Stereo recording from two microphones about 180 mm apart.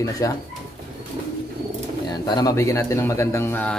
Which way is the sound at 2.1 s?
20° left (ahead or behind).